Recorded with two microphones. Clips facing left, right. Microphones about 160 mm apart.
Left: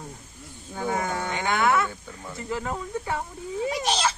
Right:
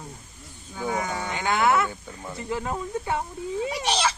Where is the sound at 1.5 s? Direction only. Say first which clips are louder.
Right 1 dB; 25° right (ahead or behind).